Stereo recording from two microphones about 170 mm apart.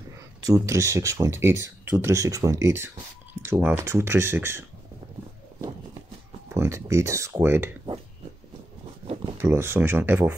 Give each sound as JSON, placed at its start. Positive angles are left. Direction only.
{"t": 0.5, "sound": "speech", "side_deg": -20}
{"t": 6.5, "sound": "speech", "side_deg": -15}
{"t": 9.0, "sound": "a sound", "side_deg": -35}
{"t": 9.4, "sound": "speech", "side_deg": -15}